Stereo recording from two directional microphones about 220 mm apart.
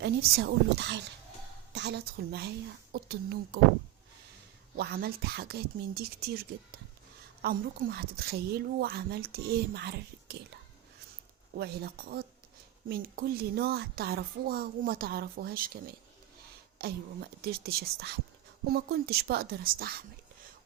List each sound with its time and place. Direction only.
0.0 s a woman's voice: 50° right (ahead or behind)
4.8 s a woman's voice: 45° right (ahead or behind)
11.5 s a woman's voice: 45° right (ahead or behind)